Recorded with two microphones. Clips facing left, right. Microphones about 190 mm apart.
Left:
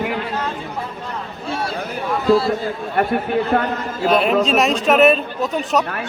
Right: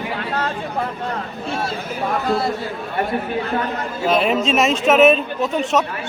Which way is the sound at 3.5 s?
60° left (ahead or behind).